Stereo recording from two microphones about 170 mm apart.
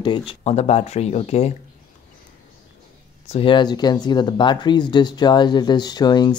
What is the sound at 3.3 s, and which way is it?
Speech, 30° left (ahead or behind).